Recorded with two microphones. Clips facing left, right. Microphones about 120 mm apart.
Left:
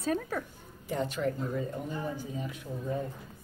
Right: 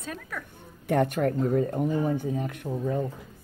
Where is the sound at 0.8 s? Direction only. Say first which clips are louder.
Right 7 dB; 60° right (ahead or behind).